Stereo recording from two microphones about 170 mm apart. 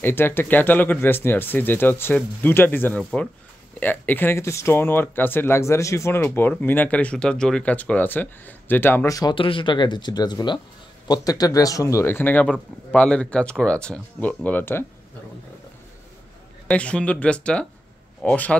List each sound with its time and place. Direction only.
0.0 s speech: 15° left (ahead or behind)
3.0 s speech: centre (ahead or behind)
3.8 s speech: 10° left (ahead or behind)
9.3 s speech: 30° left (ahead or behind); by 14.9 s 15° left (ahead or behind)
16.6 s speech: 5° left (ahead or behind)